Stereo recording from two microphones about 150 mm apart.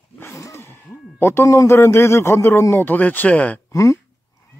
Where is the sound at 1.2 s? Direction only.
20° left (ahead or behind).